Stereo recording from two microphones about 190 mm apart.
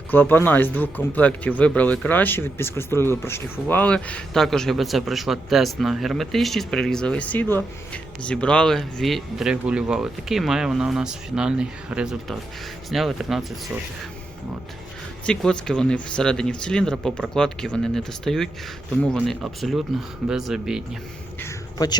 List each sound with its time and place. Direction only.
0.1 s speech: 10° left (ahead or behind)
15.3 s speech: 5° left (ahead or behind)
21.4 s a sound: 20° left (ahead or behind)